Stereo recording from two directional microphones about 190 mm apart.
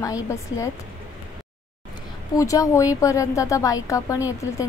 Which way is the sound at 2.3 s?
15° left (ahead or behind).